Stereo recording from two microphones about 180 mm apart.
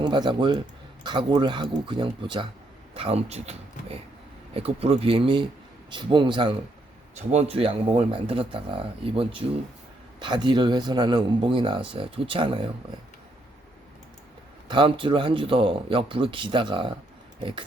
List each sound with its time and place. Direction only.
0.0 s speech: 25° right (ahead or behind)
14.7 s speech: 30° right (ahead or behind)